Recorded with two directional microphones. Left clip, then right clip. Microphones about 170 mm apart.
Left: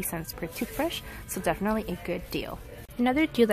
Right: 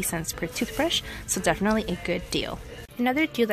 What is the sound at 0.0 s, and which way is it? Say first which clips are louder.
Speech: right 5 dB; 5° left (ahead or behind).